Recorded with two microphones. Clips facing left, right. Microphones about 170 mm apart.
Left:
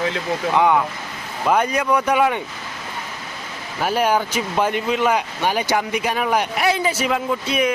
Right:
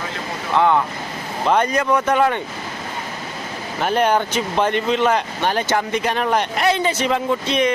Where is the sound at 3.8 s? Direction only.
5° left (ahead or behind).